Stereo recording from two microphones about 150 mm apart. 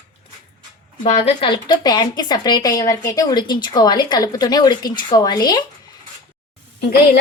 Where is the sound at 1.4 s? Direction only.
30° left (ahead or behind).